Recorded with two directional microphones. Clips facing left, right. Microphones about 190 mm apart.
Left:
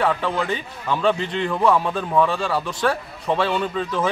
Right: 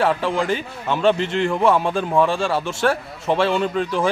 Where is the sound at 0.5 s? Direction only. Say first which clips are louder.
Right 2 dB; 25° right (ahead or behind).